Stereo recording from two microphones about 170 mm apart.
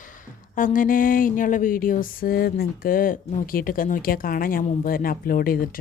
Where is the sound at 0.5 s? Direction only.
50° left (ahead or behind).